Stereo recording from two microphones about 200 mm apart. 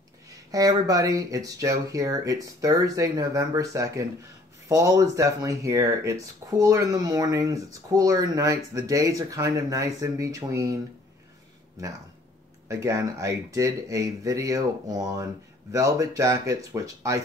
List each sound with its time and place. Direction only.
0.5 s speech: 15° right (ahead or behind)